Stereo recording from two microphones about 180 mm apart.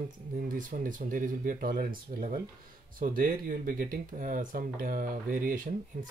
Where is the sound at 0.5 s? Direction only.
50° right (ahead or behind).